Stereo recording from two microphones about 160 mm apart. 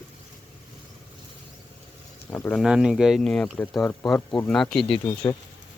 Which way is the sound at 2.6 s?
5° right (ahead or behind).